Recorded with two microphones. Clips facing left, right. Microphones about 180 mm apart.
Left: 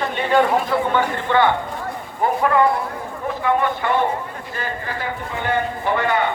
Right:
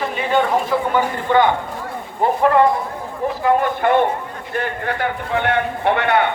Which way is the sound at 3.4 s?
45° right (ahead or behind).